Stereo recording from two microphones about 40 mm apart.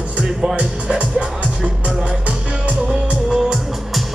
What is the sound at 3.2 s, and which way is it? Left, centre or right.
Music, centre.